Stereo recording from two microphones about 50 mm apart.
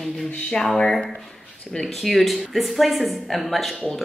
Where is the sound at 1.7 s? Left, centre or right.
Centre.